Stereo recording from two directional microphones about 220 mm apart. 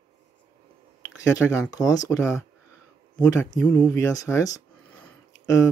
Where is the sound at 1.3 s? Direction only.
15° left (ahead or behind).